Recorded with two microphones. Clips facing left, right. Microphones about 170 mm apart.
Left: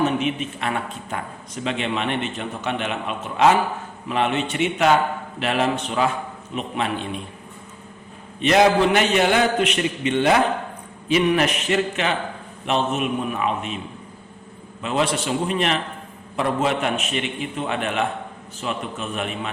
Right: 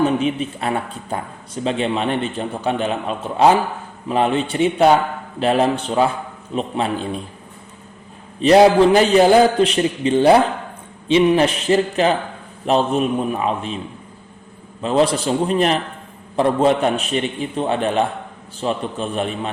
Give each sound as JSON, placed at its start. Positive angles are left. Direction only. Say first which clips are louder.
{"t": 0.0, "sound": "speech", "louder": "right 4 dB", "side_deg": -35}
{"t": 8.4, "sound": "speech", "louder": "right 6 dB", "side_deg": -35}
{"t": 14.8, "sound": "speech", "louder": "right 6 dB", "side_deg": -35}